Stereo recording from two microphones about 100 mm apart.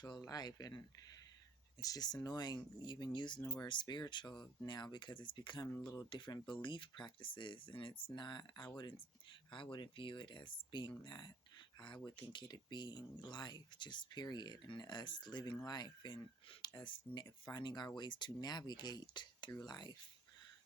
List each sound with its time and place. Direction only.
0.0 s speech: 40° left (ahead or behind)
3.4 s speech: 30° left (ahead or behind)
3.7 s speech: 50° left (ahead or behind)
5.8 s speech: 40° left (ahead or behind)
6.1 s speech: 50° left (ahead or behind)